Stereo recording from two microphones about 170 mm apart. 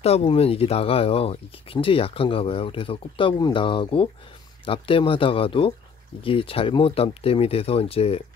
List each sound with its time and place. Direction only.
0.0 s speech: 35° left (ahead or behind)